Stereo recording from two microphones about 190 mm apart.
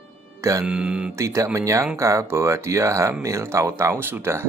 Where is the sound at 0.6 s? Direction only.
5° right (ahead or behind).